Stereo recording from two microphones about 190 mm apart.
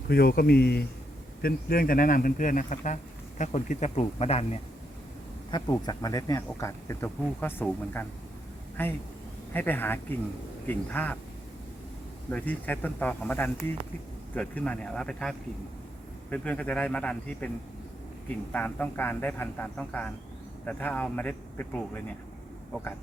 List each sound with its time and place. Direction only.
0.1 s speech: 55° left (ahead or behind); by 11.2 s 10° left (ahead or behind)
12.3 s speech: 10° left (ahead or behind)
18.5 s speech: 10° left (ahead or behind)